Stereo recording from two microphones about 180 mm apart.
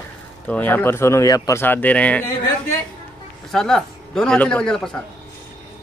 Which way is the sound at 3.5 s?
5° left (ahead or behind).